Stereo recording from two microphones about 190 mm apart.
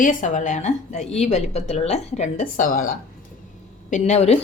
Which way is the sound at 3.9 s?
35° left (ahead or behind).